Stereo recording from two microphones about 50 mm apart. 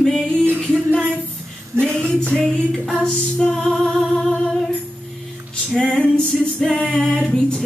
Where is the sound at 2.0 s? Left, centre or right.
Centre.